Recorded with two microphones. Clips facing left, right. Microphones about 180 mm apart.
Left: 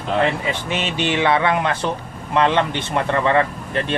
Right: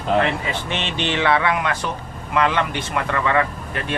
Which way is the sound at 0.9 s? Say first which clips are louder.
Left 1 dB; 15° left (ahead or behind).